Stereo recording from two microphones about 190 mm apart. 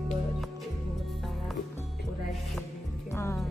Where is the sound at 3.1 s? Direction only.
15° left (ahead or behind).